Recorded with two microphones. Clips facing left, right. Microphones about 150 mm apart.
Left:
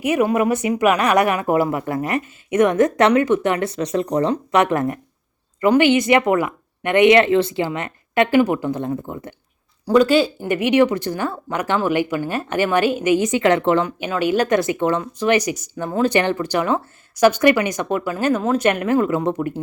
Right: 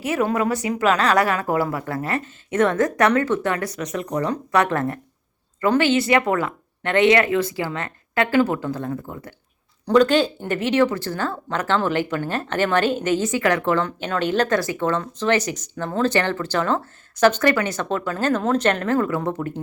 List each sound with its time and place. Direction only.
0.0 s speech: 15° left (ahead or behind)
9.8 s speech: 10° left (ahead or behind)
13.8 s speech: 10° left (ahead or behind)